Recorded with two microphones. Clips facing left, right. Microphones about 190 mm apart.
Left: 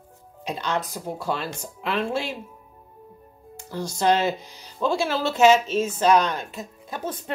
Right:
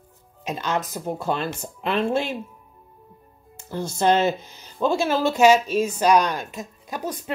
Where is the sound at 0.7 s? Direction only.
20° right (ahead or behind).